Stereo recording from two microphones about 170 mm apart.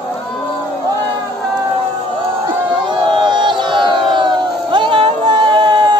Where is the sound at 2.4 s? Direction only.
25° right (ahead or behind).